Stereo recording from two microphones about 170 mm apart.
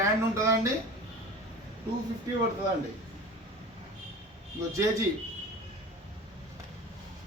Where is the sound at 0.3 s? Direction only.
15° right (ahead or behind).